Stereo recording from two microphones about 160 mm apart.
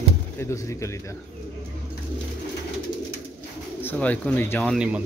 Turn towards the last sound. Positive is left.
turn(degrees=-10)  # may be behind; listen again after turning